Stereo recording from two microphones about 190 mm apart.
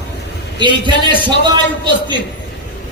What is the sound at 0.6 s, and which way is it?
Speech, 25° right (ahead or behind).